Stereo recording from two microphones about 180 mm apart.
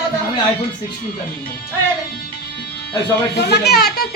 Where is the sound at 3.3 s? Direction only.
65° left (ahead or behind).